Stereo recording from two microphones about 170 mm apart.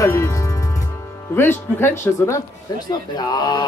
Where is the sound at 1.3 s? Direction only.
15° left (ahead or behind).